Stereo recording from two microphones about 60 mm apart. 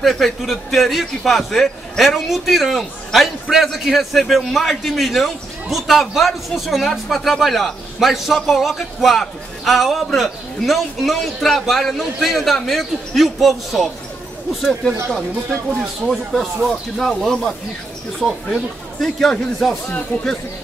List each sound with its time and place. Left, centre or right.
0.0 s a man's voice: centre
16.1 s a man's voice: centre
19.0 s speech: centre
20.1 s speech: left